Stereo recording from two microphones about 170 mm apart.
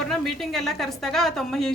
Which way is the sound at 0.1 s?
Centre (ahead or behind).